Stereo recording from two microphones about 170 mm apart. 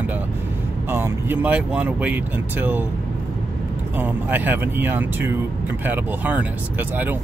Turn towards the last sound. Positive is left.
turn(degrees=-10)  # may be behind; listen again after turning